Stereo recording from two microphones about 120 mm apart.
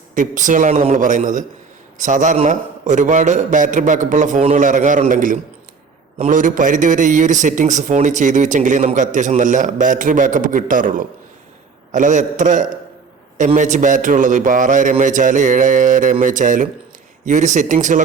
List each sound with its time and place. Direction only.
0.1 s a man's voice: 90° right
6.1 s a man's voice: 80° right